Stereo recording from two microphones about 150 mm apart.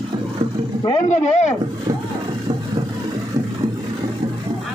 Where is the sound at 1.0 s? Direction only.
50° left (ahead or behind).